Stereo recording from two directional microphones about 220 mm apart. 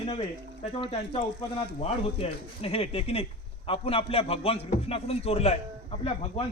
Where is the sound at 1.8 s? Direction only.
30° left (ahead or behind).